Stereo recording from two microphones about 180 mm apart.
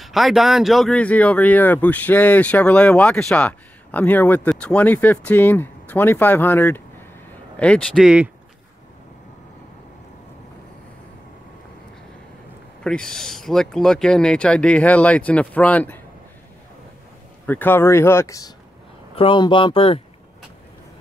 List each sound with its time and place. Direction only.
0.0 s speech: centre (ahead or behind)
12.8 s speech: 5° left (ahead or behind)
17.5 s speech: 10° left (ahead or behind)
19.1 s speech: 30° left (ahead or behind)